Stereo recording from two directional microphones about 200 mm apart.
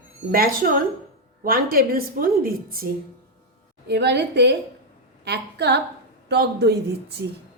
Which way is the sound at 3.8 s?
55° right (ahead or behind).